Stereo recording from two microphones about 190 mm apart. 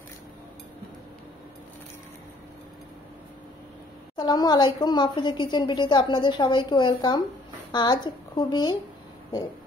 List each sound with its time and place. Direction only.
4.2 s a woman's voice: 20° left (ahead or behind)